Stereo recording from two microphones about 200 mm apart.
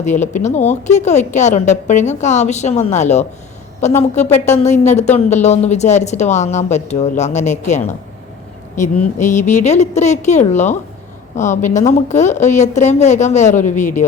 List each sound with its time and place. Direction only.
0.0 s a woman's voice: 35° left (ahead or behind)